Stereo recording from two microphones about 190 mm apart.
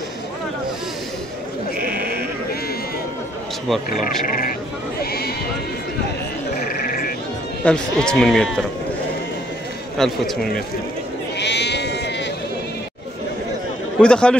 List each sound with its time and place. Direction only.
1.8 s sheep: 55° right (ahead or behind)
4.3 s speech: 50° left (ahead or behind)
6.7 s frog: 50° left (ahead or behind)
7.6 s speech: 5° left (ahead or behind)
9.9 s speech: centre (ahead or behind)
11.3 s sheep: 65° left (ahead or behind)
13.9 s speech: 5° left (ahead or behind)